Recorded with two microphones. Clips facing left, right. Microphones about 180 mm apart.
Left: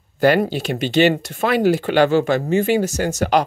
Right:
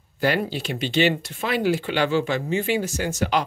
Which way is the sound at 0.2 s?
50° left (ahead or behind).